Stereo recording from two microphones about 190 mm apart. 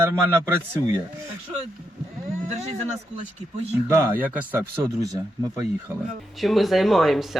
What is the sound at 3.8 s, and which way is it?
Speech, 10° right (ahead or behind).